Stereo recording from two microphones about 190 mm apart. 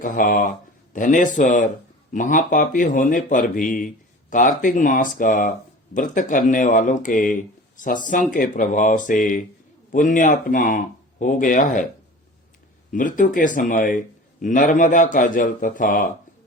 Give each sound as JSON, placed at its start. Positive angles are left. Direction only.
{"t": 0.0, "sound": "speech", "side_deg": 45}
{"t": 12.9, "sound": "speech", "side_deg": 45}